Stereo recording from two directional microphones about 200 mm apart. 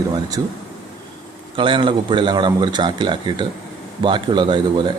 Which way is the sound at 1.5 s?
25° right (ahead or behind).